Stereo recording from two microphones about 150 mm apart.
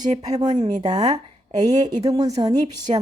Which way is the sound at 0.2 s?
25° right (ahead or behind).